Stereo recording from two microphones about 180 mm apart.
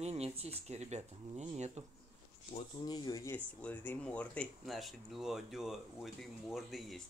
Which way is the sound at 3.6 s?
5° left (ahead or behind).